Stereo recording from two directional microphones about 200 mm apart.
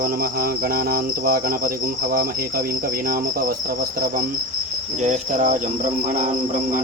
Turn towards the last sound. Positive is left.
turn(degrees=-40)  # may be behind; listen again after turning